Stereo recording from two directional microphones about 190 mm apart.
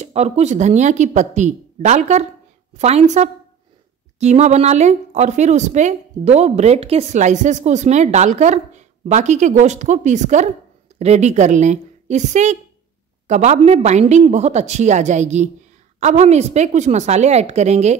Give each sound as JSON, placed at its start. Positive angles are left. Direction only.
{"t": 0.0, "sound": "speech", "side_deg": -35}